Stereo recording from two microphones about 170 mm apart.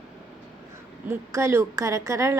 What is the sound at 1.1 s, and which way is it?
A woman's voice, 15° right (ahead or behind).